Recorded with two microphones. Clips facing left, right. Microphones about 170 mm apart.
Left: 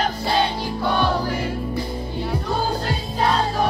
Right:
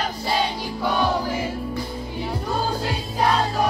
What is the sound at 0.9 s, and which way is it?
Music, 5° right (ahead or behind).